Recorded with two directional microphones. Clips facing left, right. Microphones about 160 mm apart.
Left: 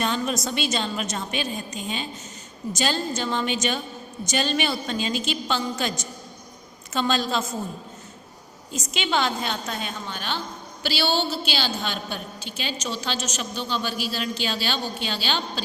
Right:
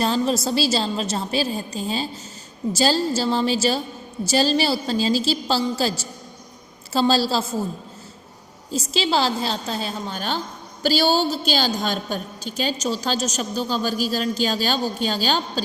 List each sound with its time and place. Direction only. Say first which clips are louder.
0.0 s a woman's voice: right 5 dB; 30° right (ahead or behind)
6.9 s a woman's voice: right 5 dB; 35° right (ahead or behind)
8.7 s a woman's voice: right 4 dB; 30° right (ahead or behind)